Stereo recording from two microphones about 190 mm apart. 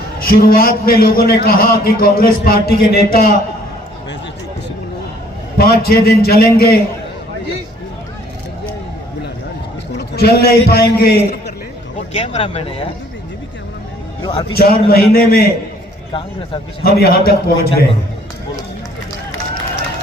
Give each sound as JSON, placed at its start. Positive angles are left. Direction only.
{"t": 0.3, "sound": "a man's voice", "side_deg": 50}
{"t": 5.5, "sound": "a man's voice", "side_deg": 55}
{"t": 9.9, "sound": "a man's voice", "side_deg": 60}
{"t": 12.1, "sound": "speech", "side_deg": 35}
{"t": 14.5, "sound": "a man's voice", "side_deg": 55}
{"t": 16.8, "sound": "a man's voice", "side_deg": 55}